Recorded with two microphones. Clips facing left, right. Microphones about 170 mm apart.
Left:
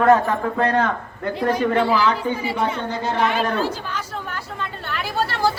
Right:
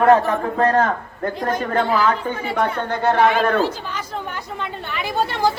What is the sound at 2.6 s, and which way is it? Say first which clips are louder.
Speech: right 2 dB; 60° right (ahead or behind).